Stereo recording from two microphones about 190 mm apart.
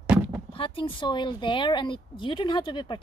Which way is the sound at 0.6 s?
25° left (ahead or behind).